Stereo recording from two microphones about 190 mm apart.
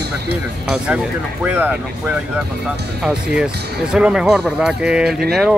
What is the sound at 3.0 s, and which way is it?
Speech, 5° right (ahead or behind).